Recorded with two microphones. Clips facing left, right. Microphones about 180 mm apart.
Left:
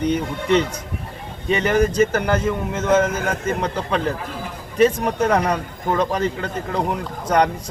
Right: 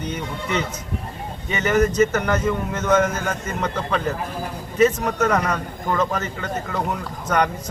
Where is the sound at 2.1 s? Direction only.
30° left (ahead or behind).